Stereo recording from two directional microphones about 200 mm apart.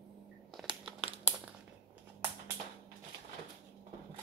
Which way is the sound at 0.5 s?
Centre (ahead or behind).